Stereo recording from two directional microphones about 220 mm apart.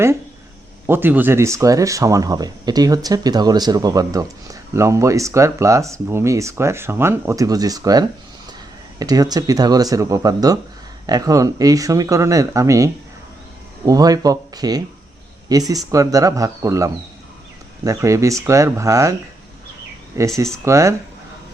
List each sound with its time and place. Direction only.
0.9 s speech: 10° right (ahead or behind)
20.1 s speech: 15° right (ahead or behind)